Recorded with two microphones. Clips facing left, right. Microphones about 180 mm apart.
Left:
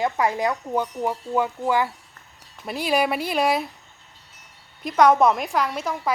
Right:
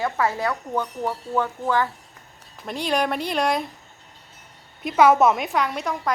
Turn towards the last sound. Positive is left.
turn(degrees=0)  # may be behind; listen again after turning